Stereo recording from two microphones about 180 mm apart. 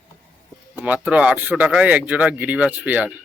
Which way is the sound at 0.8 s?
5° right (ahead or behind).